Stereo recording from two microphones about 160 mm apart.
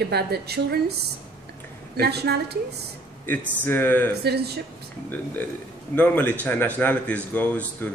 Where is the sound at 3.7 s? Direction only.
15° left (ahead or behind).